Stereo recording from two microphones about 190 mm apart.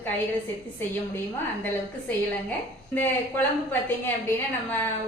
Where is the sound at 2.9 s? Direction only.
10° left (ahead or behind).